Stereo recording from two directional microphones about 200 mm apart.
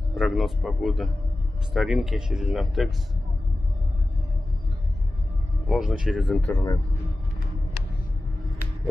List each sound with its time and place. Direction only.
0.1 s speech: centre (ahead or behind)
5.7 s speech: centre (ahead or behind)
6.4 s speech: 15° left (ahead or behind)